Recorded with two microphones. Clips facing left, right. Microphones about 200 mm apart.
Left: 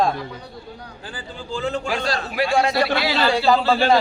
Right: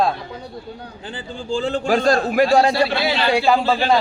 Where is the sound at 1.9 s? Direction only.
45° right (ahead or behind); by 3.3 s 25° right (ahead or behind).